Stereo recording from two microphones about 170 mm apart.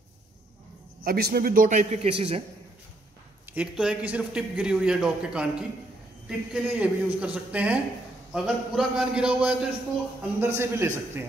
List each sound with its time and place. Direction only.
1.0 s a man's voice: 65° right (ahead or behind); by 2.4 s 35° right (ahead or behind)
3.5 s a man's voice: 5° right (ahead or behind)